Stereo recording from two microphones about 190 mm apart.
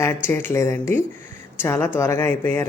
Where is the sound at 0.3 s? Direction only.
10° left (ahead or behind).